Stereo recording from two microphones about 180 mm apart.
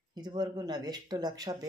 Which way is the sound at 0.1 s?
25° right (ahead or behind).